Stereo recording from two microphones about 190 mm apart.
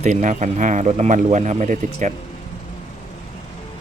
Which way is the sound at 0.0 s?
40° right (ahead or behind).